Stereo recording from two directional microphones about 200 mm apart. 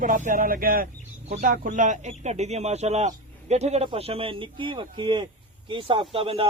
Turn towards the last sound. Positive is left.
turn(degrees=-30)  # may be behind; listen again after turning